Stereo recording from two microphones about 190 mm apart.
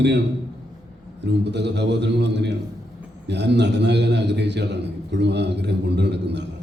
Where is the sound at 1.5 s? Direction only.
65° right (ahead or behind).